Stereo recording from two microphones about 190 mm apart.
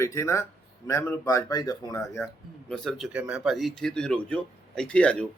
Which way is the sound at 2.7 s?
Centre (ahead or behind).